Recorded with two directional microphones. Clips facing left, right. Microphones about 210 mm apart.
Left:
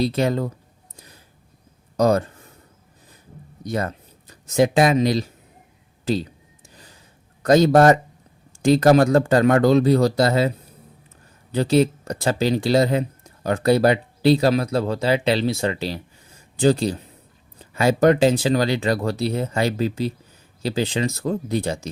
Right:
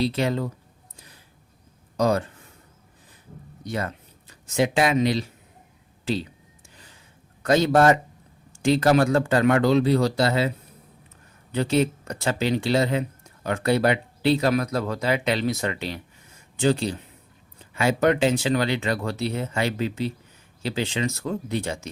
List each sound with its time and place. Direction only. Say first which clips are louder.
0.0 s speech: left 3 dB; 45° left (ahead or behind)
2.0 s speech: left 4 dB; 45° left (ahead or behind)
3.6 s speech: left 4 dB; 40° left (ahead or behind)
7.4 s speech: left 4 dB; 40° left (ahead or behind)
11.5 s speech: left 4 dB; 35° left (ahead or behind)